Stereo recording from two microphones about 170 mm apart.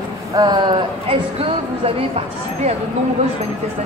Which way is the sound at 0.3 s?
25° right (ahead or behind).